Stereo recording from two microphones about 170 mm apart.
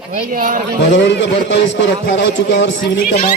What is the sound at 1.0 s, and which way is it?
A man's voice, 90° left.